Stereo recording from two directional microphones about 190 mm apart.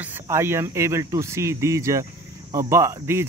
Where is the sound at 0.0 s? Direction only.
10° right (ahead or behind).